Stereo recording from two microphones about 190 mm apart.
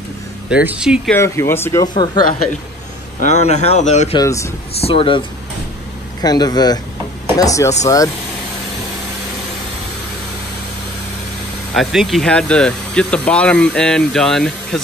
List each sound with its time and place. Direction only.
0.7 s speech: 5° right (ahead or behind)
1.1 s speech: 15° left (ahead or behind)
3.2 s speech: 40° left (ahead or behind)
4.2 s speech: 15° left (ahead or behind)
4.7 s speech: 30° left (ahead or behind)
6.2 s speech: 20° left (ahead or behind)
11.7 s speech: centre (ahead or behind)